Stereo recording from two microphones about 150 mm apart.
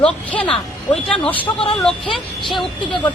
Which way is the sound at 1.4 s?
35° left (ahead or behind).